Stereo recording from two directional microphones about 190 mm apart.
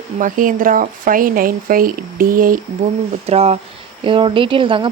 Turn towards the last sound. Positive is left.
turn(degrees=-25)  # may be behind; listen again after turning